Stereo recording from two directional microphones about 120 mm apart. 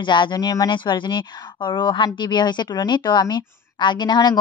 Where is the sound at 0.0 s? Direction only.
40° left (ahead or behind).